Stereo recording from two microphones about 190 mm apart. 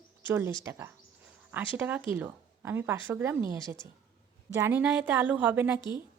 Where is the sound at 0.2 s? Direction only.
10° right (ahead or behind).